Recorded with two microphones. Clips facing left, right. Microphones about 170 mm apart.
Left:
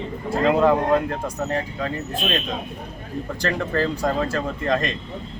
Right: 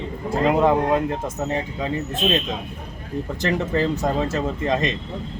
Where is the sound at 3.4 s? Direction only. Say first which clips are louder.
Right 1 dB; 20° right (ahead or behind).